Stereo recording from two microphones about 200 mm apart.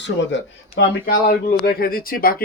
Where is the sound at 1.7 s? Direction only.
45° left (ahead or behind).